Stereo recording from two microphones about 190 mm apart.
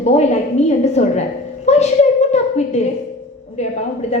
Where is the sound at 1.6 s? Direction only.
35° left (ahead or behind).